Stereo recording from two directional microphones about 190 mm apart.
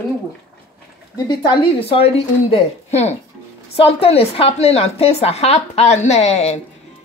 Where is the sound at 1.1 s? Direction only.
25° left (ahead or behind).